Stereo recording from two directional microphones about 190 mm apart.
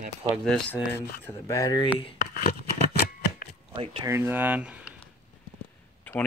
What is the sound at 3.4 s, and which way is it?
Chop, 50° left (ahead or behind).